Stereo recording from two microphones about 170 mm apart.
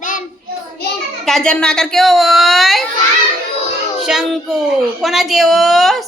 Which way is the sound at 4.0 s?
5° right (ahead or behind).